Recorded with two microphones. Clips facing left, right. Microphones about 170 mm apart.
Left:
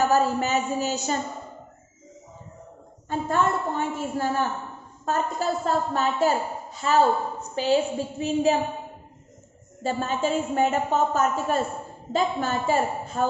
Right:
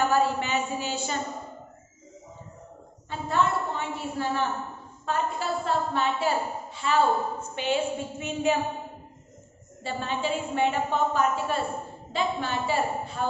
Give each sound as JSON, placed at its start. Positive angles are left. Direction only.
{"t": 0.1, "sound": "a woman's voice", "side_deg": 40}
{"t": 3.1, "sound": "a woman's voice", "side_deg": 45}
{"t": 9.8, "sound": "a woman's voice", "side_deg": 45}